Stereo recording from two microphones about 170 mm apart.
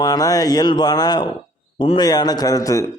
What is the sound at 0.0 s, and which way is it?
A man's voice, 20° left (ahead or behind).